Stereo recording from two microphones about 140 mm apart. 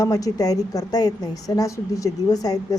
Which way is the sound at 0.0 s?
25° left (ahead or behind).